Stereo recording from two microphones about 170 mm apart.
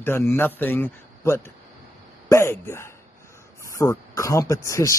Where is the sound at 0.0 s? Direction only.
15° left (ahead or behind).